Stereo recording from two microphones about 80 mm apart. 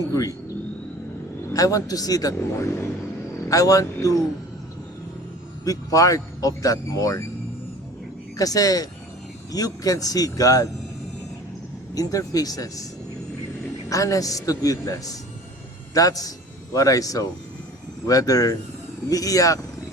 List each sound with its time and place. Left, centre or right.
0.1 s a man's voice: left
1.5 s a man's voice: left
5.6 s a man's voice: left
8.4 s a man's voice: left
11.9 s a man's voice: left
13.9 s a man's voice: left